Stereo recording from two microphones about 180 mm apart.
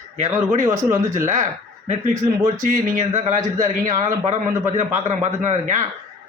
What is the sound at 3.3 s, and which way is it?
Speech, 20° right (ahead or behind).